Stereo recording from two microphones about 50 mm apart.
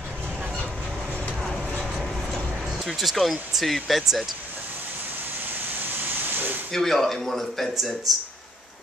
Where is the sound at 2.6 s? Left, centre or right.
Centre.